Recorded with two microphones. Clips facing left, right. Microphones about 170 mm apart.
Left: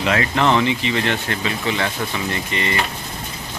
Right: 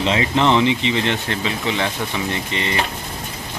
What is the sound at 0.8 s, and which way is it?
Speech, 20° right (ahead or behind).